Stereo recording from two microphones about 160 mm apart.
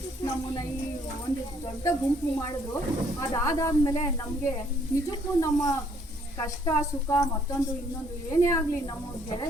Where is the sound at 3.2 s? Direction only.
20° left (ahead or behind).